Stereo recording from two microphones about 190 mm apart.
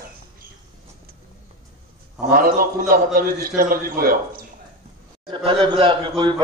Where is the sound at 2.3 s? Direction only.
50° right (ahead or behind).